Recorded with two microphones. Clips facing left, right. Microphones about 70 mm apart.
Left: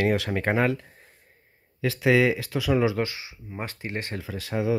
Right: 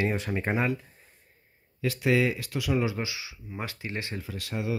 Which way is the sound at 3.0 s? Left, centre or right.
Left.